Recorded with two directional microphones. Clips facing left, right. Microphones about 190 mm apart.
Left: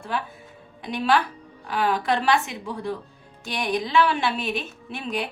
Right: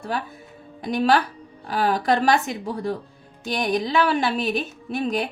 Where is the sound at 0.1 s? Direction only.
40° right (ahead or behind).